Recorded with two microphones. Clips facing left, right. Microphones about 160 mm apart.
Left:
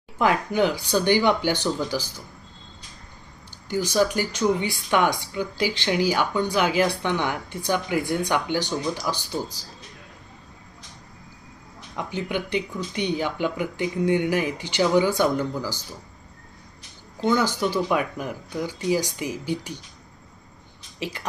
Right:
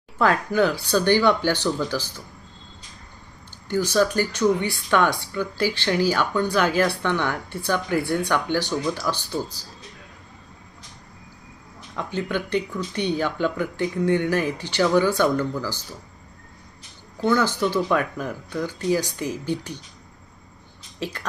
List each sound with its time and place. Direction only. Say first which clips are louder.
0.2 s speech: right 1 dB; 15° left (ahead or behind)
3.7 s speech: right 1 dB; 10° left (ahead or behind)
11.9 s speech: right 1 dB; 15° left (ahead or behind)
17.2 s speech: right 1 dB; 10° left (ahead or behind)